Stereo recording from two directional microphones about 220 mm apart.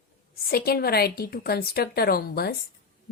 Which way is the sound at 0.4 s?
45° left (ahead or behind).